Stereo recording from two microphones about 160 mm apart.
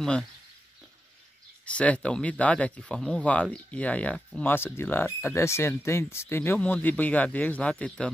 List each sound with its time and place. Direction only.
1.7 s speech: 5° left (ahead or behind)